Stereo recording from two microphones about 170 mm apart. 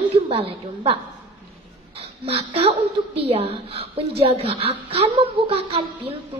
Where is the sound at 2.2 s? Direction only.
35° right (ahead or behind).